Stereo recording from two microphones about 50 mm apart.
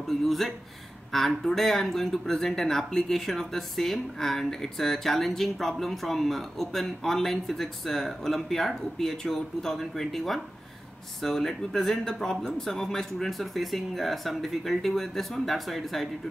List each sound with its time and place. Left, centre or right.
1.1 s speech: centre